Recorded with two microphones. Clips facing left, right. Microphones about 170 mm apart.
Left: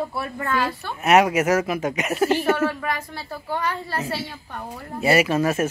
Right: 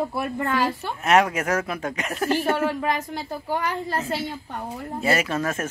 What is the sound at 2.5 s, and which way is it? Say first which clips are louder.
A woman's voice: right 1 dB; 15° right (ahead or behind).